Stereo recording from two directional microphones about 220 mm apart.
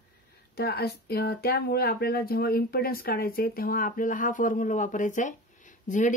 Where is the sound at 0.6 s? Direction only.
45° left (ahead or behind).